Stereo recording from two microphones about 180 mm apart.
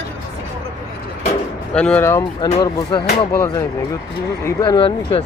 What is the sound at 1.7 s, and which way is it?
Speech, 5° left (ahead or behind).